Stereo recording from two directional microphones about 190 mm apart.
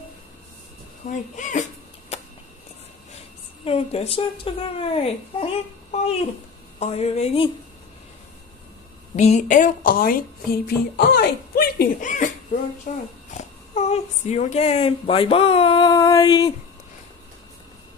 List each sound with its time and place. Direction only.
1.0 s a sound: 40° left (ahead or behind)
3.6 s speech: 30° left (ahead or behind)
9.1 s speech: 35° left (ahead or behind)
13.3 s speech: 35° left (ahead or behind); by 16.5 s 20° left (ahead or behind)